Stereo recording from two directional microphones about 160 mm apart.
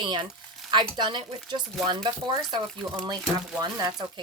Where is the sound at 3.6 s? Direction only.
25° right (ahead or behind).